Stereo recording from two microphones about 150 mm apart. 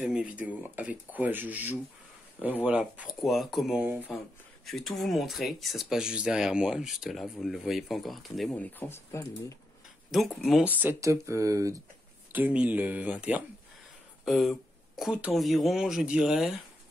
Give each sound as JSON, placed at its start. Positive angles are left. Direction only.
{"t": 0.0, "sound": "speech", "side_deg": -10}
{"t": 4.6, "sound": "speech", "side_deg": 0}
{"t": 10.6, "sound": "speech", "side_deg": -10}
{"t": 12.3, "sound": "speech", "side_deg": -10}